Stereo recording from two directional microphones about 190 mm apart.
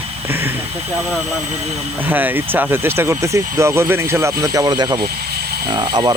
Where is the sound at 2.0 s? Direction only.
10° right (ahead or behind).